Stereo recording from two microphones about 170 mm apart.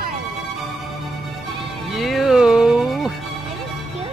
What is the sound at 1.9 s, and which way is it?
Music, centre (ahead or behind).